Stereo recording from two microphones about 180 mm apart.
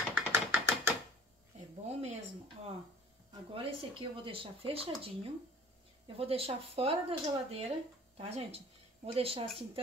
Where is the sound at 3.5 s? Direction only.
30° right (ahead or behind).